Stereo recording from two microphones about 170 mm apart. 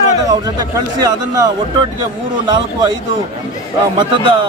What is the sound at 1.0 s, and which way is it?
Speech, 20° right (ahead or behind).